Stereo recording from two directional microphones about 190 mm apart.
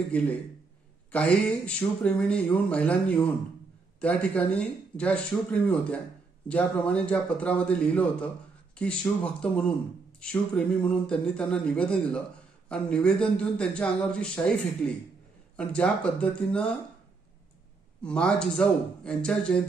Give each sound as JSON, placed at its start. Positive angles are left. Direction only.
{"t": 0.1, "sound": "a man's voice", "side_deg": 10}
{"t": 18.0, "sound": "a man's voice", "side_deg": 5}